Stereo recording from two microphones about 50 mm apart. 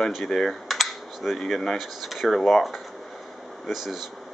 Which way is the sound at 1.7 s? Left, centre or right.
Centre.